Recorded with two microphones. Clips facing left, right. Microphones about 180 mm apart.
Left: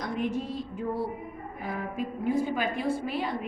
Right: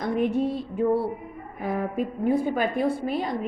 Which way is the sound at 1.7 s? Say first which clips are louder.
Right 6 dB; 55° right (ahead or behind).